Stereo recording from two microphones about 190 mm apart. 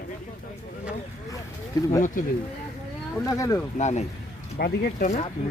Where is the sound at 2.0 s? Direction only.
40° left (ahead or behind).